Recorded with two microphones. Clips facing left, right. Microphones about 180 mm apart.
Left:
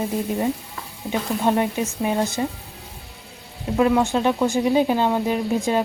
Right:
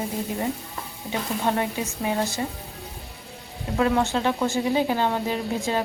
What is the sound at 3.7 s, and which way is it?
Speech, 15° left (ahead or behind).